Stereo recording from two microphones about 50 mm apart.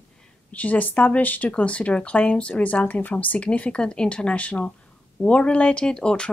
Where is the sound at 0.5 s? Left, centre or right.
Left.